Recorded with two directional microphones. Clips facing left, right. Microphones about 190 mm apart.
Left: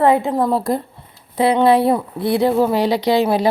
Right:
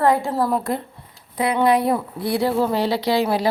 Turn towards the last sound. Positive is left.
turn(degrees=20)  # may be behind; listen again after turning